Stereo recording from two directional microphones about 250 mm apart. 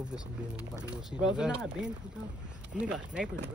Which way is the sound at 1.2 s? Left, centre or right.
Centre.